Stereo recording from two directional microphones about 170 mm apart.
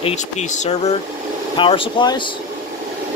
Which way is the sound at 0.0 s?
40° left (ahead or behind).